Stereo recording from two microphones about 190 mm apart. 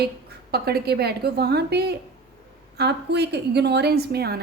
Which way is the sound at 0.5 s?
55° right (ahead or behind).